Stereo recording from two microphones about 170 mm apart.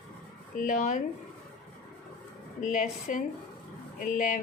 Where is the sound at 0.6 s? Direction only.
50° left (ahead or behind).